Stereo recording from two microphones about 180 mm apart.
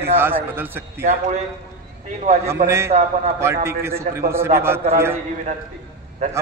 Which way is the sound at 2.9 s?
40° right (ahead or behind).